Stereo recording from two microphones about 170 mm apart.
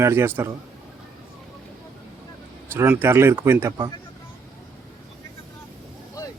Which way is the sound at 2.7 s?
15° right (ahead or behind).